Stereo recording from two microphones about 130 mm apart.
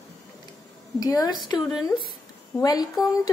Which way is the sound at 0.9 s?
30° left (ahead or behind).